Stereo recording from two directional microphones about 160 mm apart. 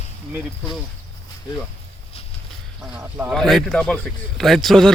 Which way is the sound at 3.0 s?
10° right (ahead or behind).